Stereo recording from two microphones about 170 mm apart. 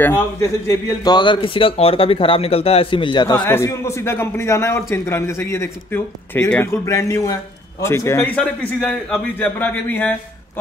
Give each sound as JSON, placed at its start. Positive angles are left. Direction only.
{"t": 0.0, "sound": "a man's voice", "side_deg": 15}
{"t": 3.4, "sound": "a man's voice", "side_deg": 15}
{"t": 8.7, "sound": "a man's voice", "side_deg": 5}